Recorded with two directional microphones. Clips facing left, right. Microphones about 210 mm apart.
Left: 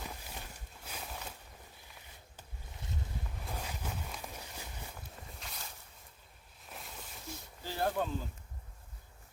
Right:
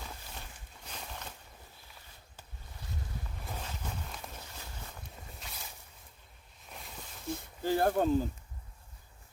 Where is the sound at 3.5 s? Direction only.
10° left (ahead or behind).